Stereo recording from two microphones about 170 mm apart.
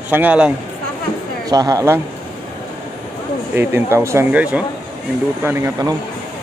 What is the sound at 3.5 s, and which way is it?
Speech, 15° right (ahead or behind).